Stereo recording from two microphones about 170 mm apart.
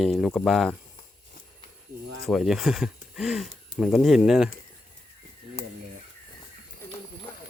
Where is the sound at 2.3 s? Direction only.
Centre (ahead or behind).